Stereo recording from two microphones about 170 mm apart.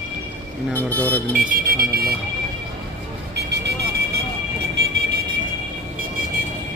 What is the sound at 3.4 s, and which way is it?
Vehicle, 75° right (ahead or behind).